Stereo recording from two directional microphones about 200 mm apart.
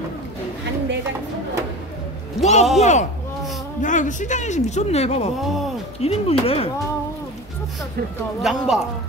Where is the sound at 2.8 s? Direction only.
35° left (ahead or behind).